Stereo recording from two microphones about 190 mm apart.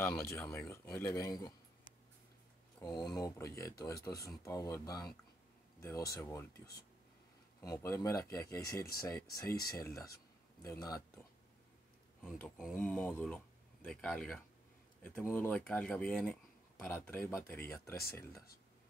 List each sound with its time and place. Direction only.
0.0 s speech: 10° left (ahead or behind)
2.8 s speech: 20° left (ahead or behind)
7.6 s speech: 15° left (ahead or behind)
12.2 s speech: centre (ahead or behind)